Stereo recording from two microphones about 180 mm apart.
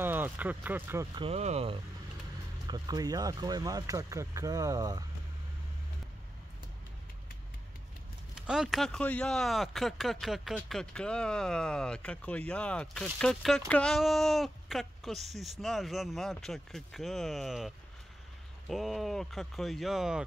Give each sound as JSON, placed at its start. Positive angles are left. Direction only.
{"t": 0.0, "sound": "speech", "side_deg": -10}
{"t": 1.1, "sound": "speech", "side_deg": -35}
{"t": 2.6, "sound": "speech", "side_deg": -20}
{"t": 8.4, "sound": "speech", "side_deg": -5}